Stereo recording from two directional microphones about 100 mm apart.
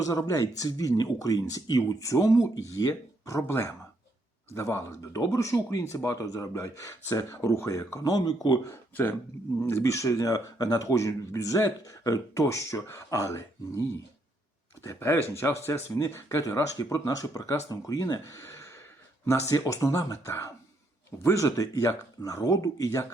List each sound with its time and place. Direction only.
0.0 s speech: 35° left (ahead or behind)
8.7 s speech: 20° left (ahead or behind)